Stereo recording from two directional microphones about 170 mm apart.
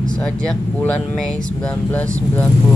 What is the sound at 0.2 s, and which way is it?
Speech, 5° left (ahead or behind).